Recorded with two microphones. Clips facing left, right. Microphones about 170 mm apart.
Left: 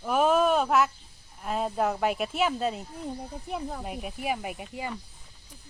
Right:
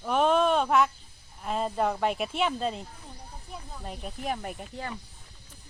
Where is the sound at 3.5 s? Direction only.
65° left (ahead or behind).